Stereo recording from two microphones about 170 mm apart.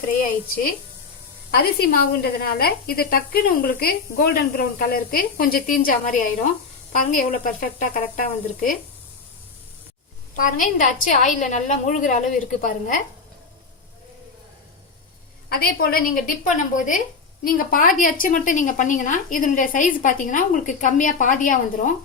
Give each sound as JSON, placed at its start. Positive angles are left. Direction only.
{"t": 0.2, "sound": "a woman's voice", "side_deg": 60}
{"t": 10.3, "sound": "a woman's voice", "side_deg": 55}
{"t": 15.4, "sound": "a woman's voice", "side_deg": 65}